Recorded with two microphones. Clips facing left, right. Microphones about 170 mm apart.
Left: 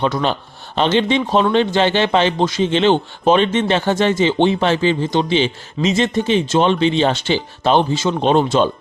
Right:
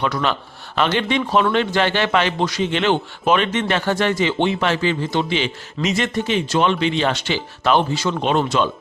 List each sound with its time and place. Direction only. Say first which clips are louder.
0.0 s speech: left 3 dB; 30° left (ahead or behind)